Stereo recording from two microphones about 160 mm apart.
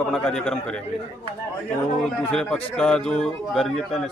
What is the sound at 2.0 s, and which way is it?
Speech, 5° left (ahead or behind).